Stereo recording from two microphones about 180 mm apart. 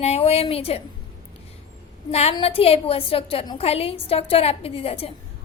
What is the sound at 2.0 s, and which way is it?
A woman's voice, 35° left (ahead or behind).